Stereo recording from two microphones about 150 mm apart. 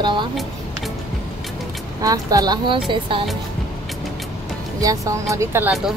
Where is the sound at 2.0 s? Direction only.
25° right (ahead or behind).